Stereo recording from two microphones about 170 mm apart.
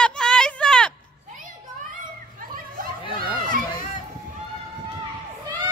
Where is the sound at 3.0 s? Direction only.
30° left (ahead or behind).